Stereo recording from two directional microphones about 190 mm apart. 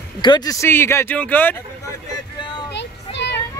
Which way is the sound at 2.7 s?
65° left (ahead or behind).